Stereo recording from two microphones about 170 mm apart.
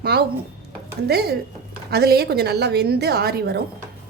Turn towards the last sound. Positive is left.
turn(degrees=-70)  # may be behind; listen again after turning